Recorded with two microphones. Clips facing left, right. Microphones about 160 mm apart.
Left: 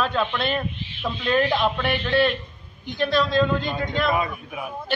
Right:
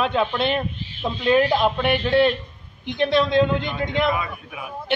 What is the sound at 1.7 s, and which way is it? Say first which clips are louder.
A man's voice: right 3 dB; 25° right (ahead or behind).